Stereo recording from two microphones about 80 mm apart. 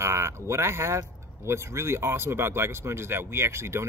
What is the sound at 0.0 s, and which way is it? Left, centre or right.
Speech, right.